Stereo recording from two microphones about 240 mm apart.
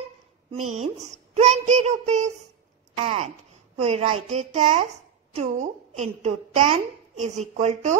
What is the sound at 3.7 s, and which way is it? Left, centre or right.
A woman's voice, right.